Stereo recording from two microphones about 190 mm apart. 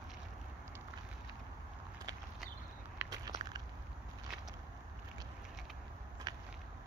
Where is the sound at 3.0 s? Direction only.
20° right (ahead or behind).